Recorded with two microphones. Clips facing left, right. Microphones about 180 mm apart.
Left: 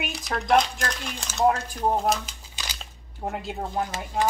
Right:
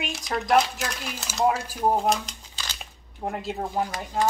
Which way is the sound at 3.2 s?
Centre (ahead or behind).